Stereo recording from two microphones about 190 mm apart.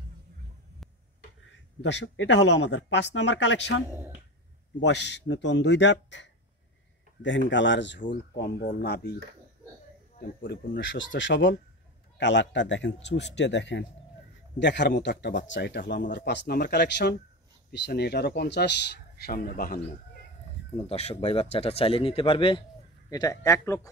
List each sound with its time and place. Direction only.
1.8 s a man's voice: 65° left (ahead or behind)
10.2 s speech: 55° left (ahead or behind)
10.8 s a man's voice: 75° left (ahead or behind); by 19.8 s 50° left (ahead or behind)
20.7 s speech: 35° left (ahead or behind); by 23.9 s 15° left (ahead or behind)